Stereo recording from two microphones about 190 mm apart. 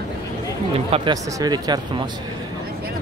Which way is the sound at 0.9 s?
20° right (ahead or behind).